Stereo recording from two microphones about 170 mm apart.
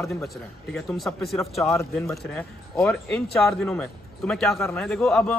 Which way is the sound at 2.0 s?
5° left (ahead or behind).